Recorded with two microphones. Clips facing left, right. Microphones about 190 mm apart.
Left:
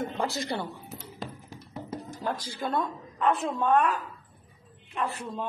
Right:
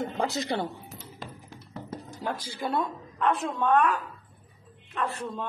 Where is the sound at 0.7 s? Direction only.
Centre (ahead or behind).